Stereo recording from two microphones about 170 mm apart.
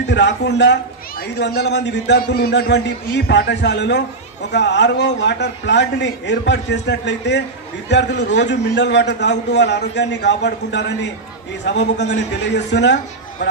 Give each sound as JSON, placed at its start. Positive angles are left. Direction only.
{"t": 0.1, "sound": "a man's voice", "side_deg": 90}
{"t": 3.3, "sound": "speech", "side_deg": 90}